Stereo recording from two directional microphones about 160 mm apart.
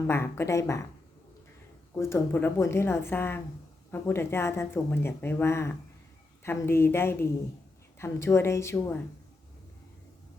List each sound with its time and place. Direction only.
0.1 s speech: 15° left (ahead or behind)
1.9 s speech: 15° left (ahead or behind)